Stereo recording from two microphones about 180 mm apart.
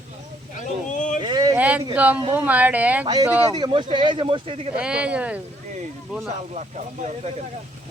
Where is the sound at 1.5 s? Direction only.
10° right (ahead or behind).